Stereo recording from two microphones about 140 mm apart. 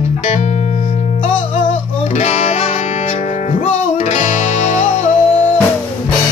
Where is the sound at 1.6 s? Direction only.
60° left (ahead or behind).